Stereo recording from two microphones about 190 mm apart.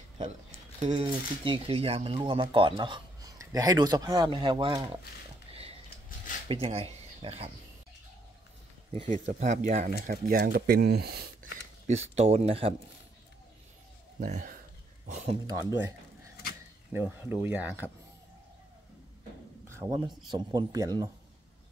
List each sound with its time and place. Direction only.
0.8 s speech: 30° right (ahead or behind)
5.5 s a sound: 30° right (ahead or behind)
6.5 s speech: 30° right (ahead or behind)
8.9 s speech: 35° right (ahead or behind); by 11.2 s 55° right (ahead or behind)
12.2 s speech: 35° right (ahead or behind)
14.2 s speech: 45° right (ahead or behind)
16.9 s speech: 10° right (ahead or behind)
19.7 s a sound: 15° right (ahead or behind)
20.2 s speech: 20° right (ahead or behind)